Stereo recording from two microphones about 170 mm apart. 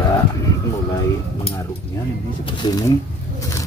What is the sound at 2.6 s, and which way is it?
Speech, 20° left (ahead or behind).